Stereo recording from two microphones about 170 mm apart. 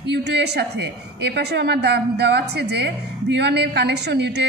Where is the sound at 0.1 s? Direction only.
80° right.